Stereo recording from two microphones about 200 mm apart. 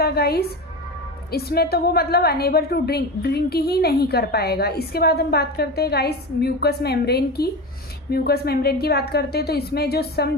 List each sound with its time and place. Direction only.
0.0 s a woman's voice: 50° left (ahead or behind)